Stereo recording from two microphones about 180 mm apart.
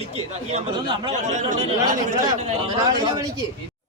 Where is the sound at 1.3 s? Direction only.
45° right (ahead or behind).